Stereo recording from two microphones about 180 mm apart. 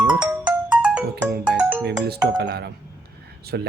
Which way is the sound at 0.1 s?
5° right (ahead or behind).